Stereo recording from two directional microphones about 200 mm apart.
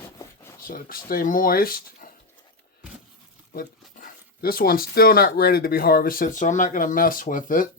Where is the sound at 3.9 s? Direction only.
45° left (ahead or behind).